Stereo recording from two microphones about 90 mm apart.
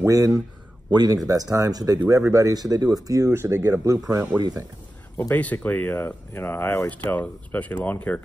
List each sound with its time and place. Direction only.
0.0 s speech: 40° right (ahead or behind)
5.3 s speech: 20° left (ahead or behind)